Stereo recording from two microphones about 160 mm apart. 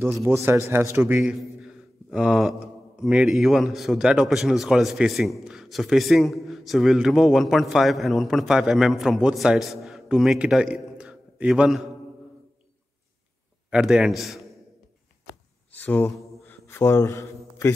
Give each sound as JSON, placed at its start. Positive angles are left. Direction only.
{"t": 0.3, "sound": "a man's voice", "side_deg": -15}
{"t": 13.7, "sound": "a man's voice", "side_deg": -5}
{"t": 15.7, "sound": "a man's voice", "side_deg": 10}